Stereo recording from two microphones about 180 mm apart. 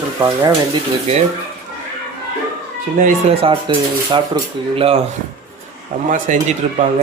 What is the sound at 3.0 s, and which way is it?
Speech, 50° right (ahead or behind).